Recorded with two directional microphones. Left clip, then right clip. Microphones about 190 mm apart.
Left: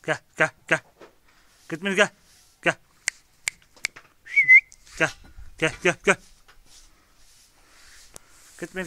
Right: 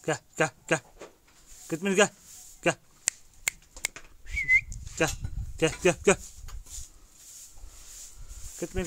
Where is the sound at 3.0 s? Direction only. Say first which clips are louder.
Left 3 dB; 25° right (ahead or behind).